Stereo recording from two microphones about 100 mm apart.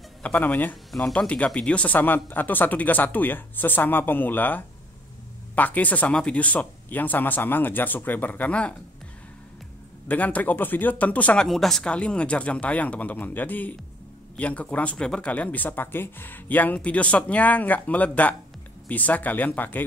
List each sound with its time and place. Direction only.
0.2 s speech: 20° left (ahead or behind)
10.0 s speech: 15° left (ahead or behind)
11.4 s speech: 5° left (ahead or behind)